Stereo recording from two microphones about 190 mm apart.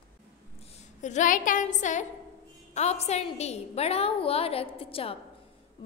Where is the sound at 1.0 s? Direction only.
40° left (ahead or behind).